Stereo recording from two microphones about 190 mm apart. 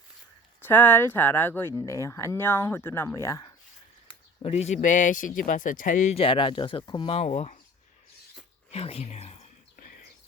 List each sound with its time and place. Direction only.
0.6 s speech: 10° left (ahead or behind)
4.4 s speech: 35° left (ahead or behind)
8.7 s speech: 30° left (ahead or behind)